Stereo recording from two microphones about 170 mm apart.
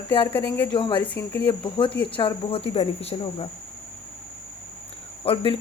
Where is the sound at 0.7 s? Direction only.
30° left (ahead or behind).